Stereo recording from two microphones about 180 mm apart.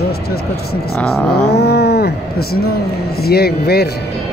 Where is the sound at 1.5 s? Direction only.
65° left (ahead or behind).